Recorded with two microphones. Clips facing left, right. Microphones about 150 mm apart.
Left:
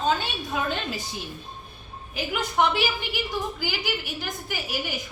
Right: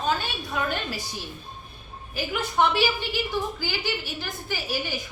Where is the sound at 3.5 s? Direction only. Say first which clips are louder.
Even; 15° left (ahead or behind).